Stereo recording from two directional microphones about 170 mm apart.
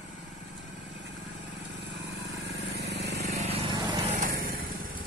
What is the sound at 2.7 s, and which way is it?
Vehicle, 75° right (ahead or behind).